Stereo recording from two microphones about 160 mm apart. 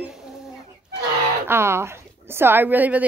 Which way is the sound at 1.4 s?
15° right (ahead or behind).